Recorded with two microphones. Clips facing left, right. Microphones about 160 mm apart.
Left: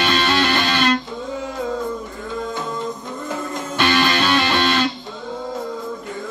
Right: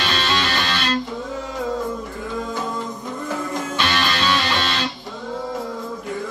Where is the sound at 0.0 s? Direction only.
55° left (ahead or behind).